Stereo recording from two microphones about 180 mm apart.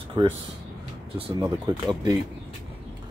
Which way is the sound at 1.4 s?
25° right (ahead or behind).